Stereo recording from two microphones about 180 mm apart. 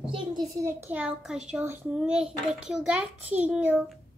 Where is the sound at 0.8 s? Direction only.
5° right (ahead or behind).